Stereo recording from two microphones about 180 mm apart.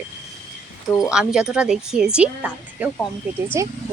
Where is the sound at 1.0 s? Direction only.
5° right (ahead or behind).